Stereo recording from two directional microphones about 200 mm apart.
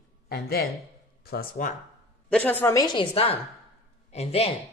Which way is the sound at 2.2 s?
5° left (ahead or behind).